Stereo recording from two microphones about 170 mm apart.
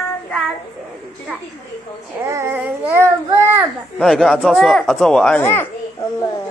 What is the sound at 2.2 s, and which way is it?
Child singing, 15° right (ahead or behind).